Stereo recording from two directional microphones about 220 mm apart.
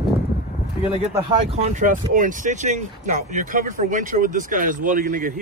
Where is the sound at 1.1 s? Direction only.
20° right (ahead or behind).